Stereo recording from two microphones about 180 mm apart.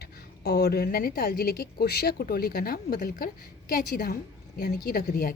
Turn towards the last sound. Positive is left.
turn(degrees=55)  # may be behind; listen again after turning